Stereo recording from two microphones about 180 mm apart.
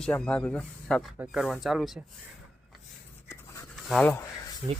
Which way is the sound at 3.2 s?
15° left (ahead or behind).